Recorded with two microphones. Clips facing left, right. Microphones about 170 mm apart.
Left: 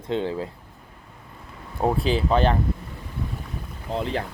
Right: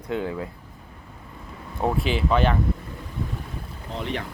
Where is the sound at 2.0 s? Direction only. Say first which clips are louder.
Left 1 dB; 35° left (ahead or behind).